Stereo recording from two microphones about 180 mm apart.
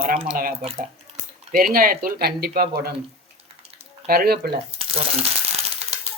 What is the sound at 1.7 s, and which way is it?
Speech, 55° right (ahead or behind).